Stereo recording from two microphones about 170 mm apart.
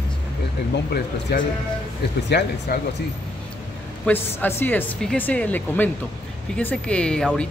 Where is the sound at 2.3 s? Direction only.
80° left.